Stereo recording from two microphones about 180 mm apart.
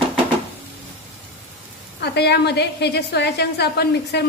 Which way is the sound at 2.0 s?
70° left (ahead or behind).